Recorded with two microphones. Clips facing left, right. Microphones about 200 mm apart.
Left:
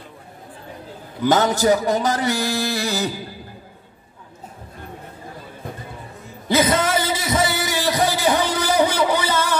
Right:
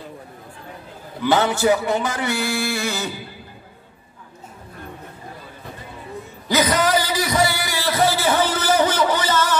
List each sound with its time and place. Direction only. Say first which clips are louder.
1.2 s music: left 1 dB; 40° left (ahead or behind)
6.5 s music: even; 25° left (ahead or behind); by 9.6 s 10° left (ahead or behind)